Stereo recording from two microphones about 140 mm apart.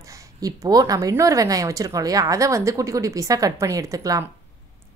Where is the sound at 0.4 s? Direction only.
25° right (ahead or behind).